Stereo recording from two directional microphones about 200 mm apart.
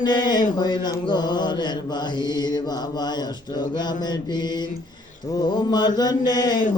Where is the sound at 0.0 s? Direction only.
20° left (ahead or behind).